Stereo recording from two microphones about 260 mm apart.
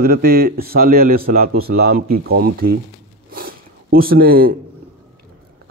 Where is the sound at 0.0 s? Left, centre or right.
Right.